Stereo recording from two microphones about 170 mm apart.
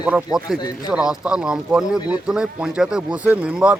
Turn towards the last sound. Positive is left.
turn(degrees=-5)  # may be behind; listen again after turning